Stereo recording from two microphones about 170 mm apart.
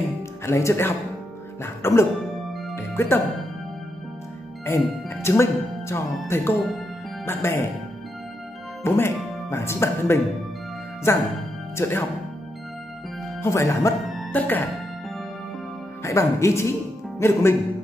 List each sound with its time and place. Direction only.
0.5 s speech: 15° left (ahead or behind)
2.7 s music: 15° left (ahead or behind)
4.6 s speech: 15° left (ahead or behind)
8.8 s speech: 15° left (ahead or behind)
13.4 s speech: 15° left (ahead or behind)
14.0 s music: centre (ahead or behind)
16.0 s speech: 20° left (ahead or behind)